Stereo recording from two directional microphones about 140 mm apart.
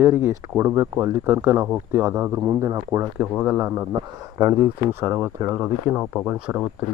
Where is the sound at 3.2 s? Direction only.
5° right (ahead or behind).